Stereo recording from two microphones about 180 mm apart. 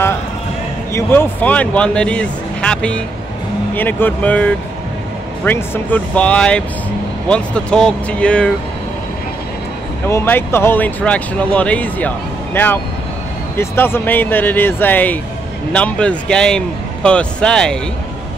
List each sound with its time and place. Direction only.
0.9 s a man's voice: 10° left (ahead or behind)
10.0 s a man's voice: 10° left (ahead or behind)